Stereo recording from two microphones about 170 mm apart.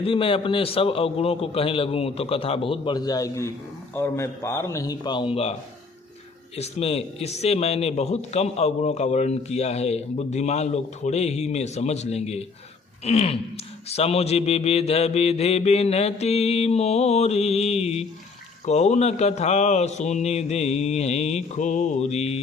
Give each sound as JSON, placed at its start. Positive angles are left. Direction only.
{"t": 0.0, "sound": "speech", "side_deg": 30}
{"t": 6.6, "sound": "speech", "side_deg": 40}